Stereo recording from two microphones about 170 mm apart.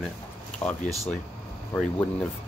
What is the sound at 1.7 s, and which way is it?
Speech, 10° left (ahead or behind).